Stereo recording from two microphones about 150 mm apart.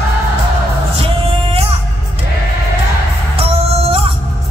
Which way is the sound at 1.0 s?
40° right (ahead or behind).